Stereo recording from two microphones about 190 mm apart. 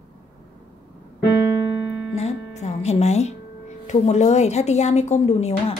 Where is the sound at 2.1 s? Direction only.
35° left (ahead or behind).